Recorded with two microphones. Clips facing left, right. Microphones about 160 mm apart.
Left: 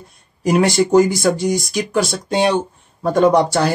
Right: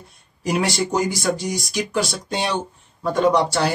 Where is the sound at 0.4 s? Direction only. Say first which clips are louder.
Left 7 dB; 50° left (ahead or behind).